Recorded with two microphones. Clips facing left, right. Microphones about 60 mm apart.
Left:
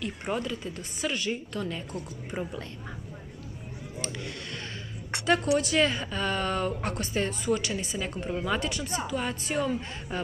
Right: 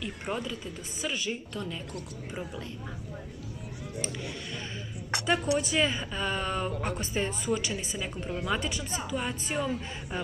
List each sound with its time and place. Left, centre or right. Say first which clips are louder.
0.0 s speech: left 2 dB; centre
2.3 s a woman's voice: left 4 dB; left
5.2 s speech: left 3 dB; centre
8.3 s speech: left 1 dB; centre
8.5 s speech: left 2 dB; centre
9.0 s speech: left 2 dB; centre